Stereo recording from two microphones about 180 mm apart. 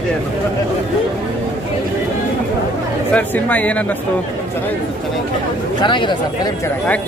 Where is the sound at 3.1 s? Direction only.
10° left (ahead or behind).